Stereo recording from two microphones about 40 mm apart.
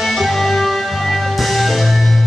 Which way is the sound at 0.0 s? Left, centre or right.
Centre.